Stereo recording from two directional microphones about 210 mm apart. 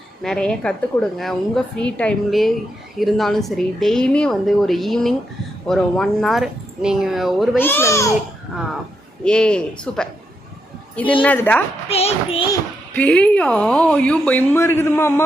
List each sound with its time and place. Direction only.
0.2 s a woman's voice: 5° left (ahead or behind)
7.6 s a woman's voice: 10° left (ahead or behind)
9.2 s a woman's voice: 5° left (ahead or behind)
11.2 s a woman's voice: 10° left (ahead or behind)
11.9 s music: 30° left (ahead or behind)
12.5 s a woman's voice: 5° left (ahead or behind)